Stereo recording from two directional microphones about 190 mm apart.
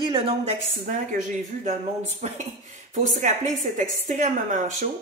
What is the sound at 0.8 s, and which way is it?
Speech, 40° right (ahead or behind).